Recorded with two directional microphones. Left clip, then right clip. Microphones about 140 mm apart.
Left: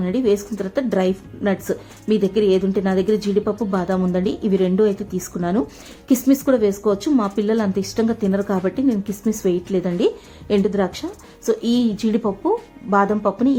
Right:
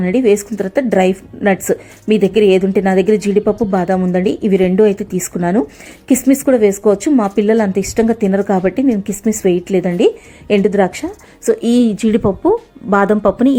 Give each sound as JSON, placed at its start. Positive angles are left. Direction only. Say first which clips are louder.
{"t": 0.0, "sound": "a woman's voice", "louder": "right 7 dB", "side_deg": -25}
{"t": 12.9, "sound": "speech", "louder": "right 5 dB", "side_deg": -45}